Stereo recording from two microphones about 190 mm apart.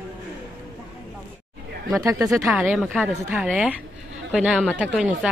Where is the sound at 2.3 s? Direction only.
Centre (ahead or behind).